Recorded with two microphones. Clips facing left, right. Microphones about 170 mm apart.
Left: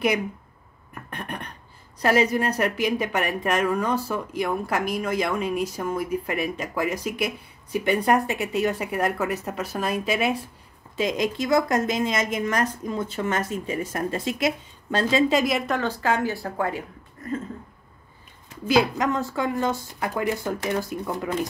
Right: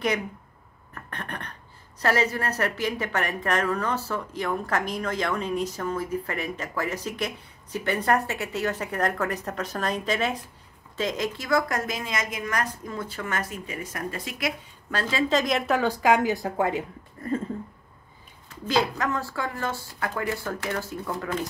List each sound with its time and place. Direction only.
0.9 s speech: 10° left (ahead or behind)
15.2 s speech: 10° left (ahead or behind); by 16.8 s 20° right (ahead or behind)
18.7 s speech: 15° left (ahead or behind)